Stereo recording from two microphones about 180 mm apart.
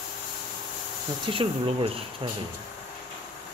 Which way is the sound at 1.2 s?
30° right (ahead or behind).